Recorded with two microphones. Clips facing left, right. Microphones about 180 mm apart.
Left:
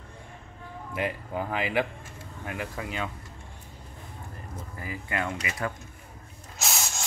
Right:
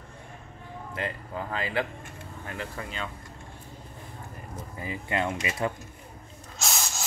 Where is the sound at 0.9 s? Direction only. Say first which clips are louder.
Left 4 dB; 15° left (ahead or behind).